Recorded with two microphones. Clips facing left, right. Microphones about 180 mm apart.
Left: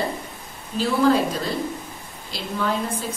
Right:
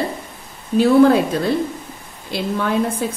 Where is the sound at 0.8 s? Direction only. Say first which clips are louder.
Right 7 dB; 60° right (ahead or behind).